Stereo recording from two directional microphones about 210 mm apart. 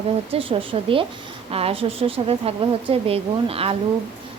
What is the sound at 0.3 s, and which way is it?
A woman's voice, 25° right (ahead or behind).